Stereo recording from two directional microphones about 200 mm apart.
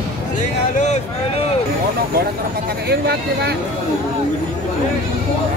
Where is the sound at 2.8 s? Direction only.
55° right (ahead or behind).